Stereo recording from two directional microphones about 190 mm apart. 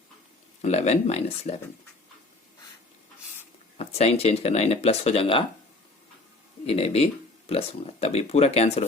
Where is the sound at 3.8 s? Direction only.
35° left (ahead or behind).